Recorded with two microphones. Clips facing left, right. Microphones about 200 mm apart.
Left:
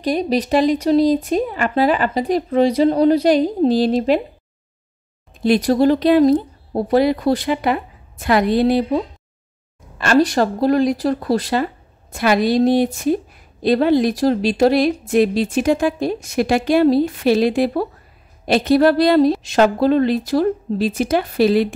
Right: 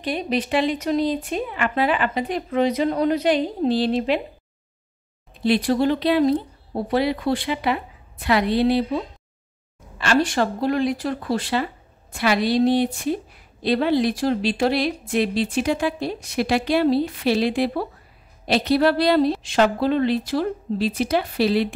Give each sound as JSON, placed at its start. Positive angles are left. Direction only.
{"t": 0.0, "sound": "speech", "side_deg": 40}
{"t": 5.3, "sound": "speech", "side_deg": 45}